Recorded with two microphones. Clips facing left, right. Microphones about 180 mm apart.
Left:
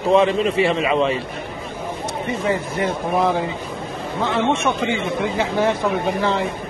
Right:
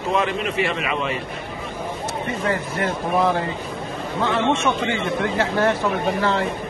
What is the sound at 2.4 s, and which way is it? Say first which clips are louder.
Speech: left 2 dB; 15° left (ahead or behind).